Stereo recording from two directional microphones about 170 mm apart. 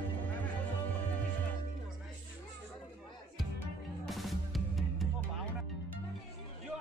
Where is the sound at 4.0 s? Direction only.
Centre (ahead or behind).